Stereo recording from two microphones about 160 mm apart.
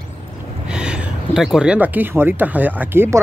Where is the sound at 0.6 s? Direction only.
5° right (ahead or behind).